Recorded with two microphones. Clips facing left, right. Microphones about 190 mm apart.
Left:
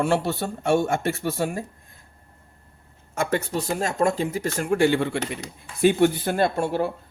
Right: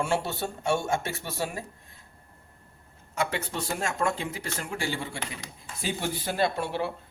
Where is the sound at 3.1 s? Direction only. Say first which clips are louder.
Left 6 dB; 45° left (ahead or behind).